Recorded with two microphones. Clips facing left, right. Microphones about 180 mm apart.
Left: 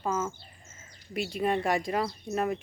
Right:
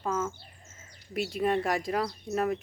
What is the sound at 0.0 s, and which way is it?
Bird, 5° left (ahead or behind).